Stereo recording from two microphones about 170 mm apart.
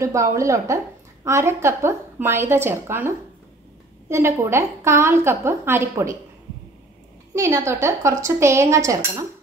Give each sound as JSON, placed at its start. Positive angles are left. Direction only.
{"t": 0.0, "sound": "a woman's voice", "side_deg": -20}
{"t": 7.3, "sound": "a woman's voice", "side_deg": -15}